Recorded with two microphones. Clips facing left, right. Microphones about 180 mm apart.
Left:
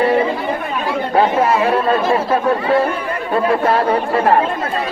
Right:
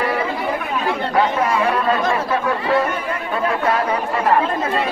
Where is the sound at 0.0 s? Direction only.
30° left (ahead or behind).